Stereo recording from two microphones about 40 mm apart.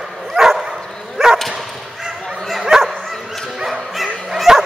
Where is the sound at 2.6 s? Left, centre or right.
Centre.